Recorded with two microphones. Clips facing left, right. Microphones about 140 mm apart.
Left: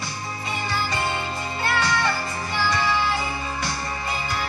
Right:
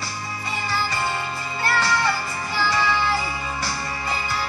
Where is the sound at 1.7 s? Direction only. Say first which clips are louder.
Right 1 dB; 5° right (ahead or behind).